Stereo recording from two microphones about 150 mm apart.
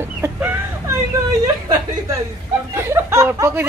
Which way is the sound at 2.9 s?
20° right (ahead or behind).